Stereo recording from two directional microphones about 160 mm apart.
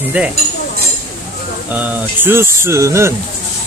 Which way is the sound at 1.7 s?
10° right (ahead or behind).